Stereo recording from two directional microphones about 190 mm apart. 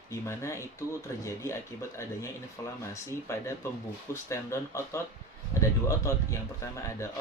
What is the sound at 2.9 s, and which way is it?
Speech, 15° left (ahead or behind).